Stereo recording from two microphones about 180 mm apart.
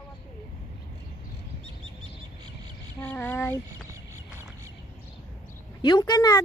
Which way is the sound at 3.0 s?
10° left (ahead or behind).